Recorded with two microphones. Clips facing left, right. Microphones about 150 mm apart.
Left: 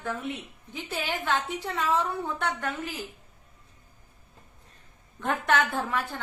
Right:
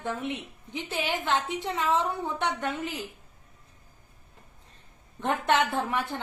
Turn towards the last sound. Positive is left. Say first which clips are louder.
# right 1 dB
turn(degrees=-20)  # may be behind; listen again after turning